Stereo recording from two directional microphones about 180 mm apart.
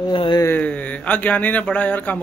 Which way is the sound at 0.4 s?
10° left (ahead or behind).